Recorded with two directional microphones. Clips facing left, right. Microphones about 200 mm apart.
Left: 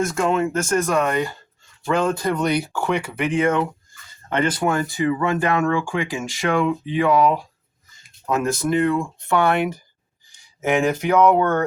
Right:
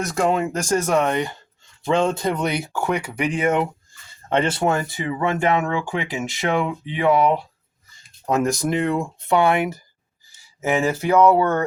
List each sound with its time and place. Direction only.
0.1 s speech: 35° right (ahead or behind)
2.7 s speech: 10° right (ahead or behind)
8.4 s speech: 15° right (ahead or behind)